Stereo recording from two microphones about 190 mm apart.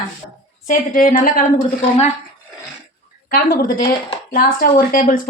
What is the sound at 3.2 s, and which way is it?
Speech, 50° left (ahead or behind).